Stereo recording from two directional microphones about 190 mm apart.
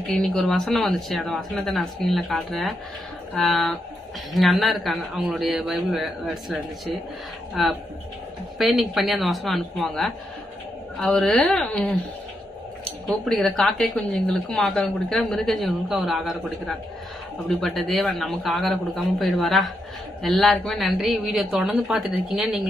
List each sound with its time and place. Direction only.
0.1 s a woman's voice: 5° left (ahead or behind)
13.1 s a woman's voice: centre (ahead or behind)